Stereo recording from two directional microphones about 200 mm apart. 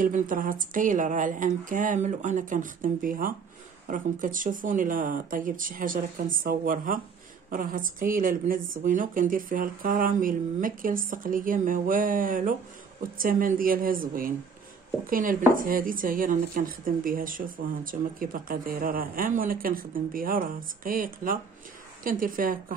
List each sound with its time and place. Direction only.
0.0 s speech: 40° right (ahead or behind)